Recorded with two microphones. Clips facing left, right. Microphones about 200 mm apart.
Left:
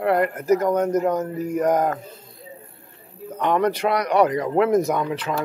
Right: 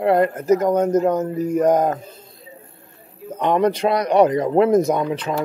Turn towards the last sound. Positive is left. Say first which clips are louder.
# right 3 dB
turn(degrees=-20)  # may be behind; listen again after turning